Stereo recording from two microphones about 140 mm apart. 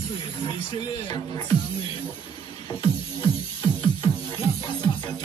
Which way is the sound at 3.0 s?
40° left (ahead or behind).